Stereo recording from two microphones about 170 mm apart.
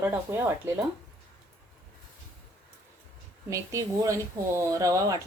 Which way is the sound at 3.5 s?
20° right (ahead or behind).